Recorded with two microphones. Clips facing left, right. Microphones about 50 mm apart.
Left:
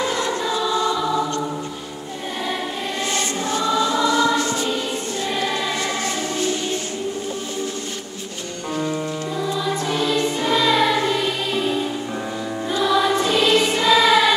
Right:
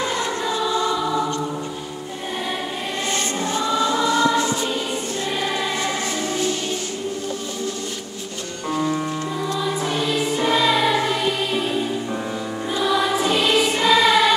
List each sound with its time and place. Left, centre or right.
0.1 s choir: centre
0.4 s music: centre
3.5 s choir: centre
4.4 s music: centre
8.7 s music: centre
12.7 s choir: centre